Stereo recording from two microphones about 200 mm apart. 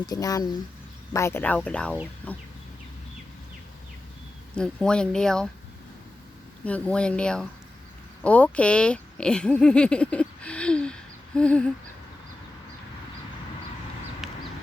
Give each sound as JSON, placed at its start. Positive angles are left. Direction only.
{"t": 0.0, "sound": "speech", "side_deg": 20}
{"t": 4.5, "sound": "speech", "side_deg": 5}
{"t": 6.7, "sound": "speech", "side_deg": 5}
{"t": 14.2, "sound": "a sound", "side_deg": 0}